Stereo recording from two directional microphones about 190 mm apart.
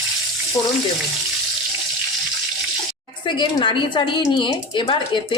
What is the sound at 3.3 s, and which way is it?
A woman's voice, 25° left (ahead or behind).